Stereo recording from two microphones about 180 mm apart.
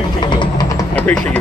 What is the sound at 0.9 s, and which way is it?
Speech, 10° left (ahead or behind).